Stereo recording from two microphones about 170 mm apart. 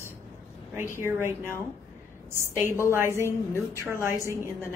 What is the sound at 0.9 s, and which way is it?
Speech, 15° right (ahead or behind).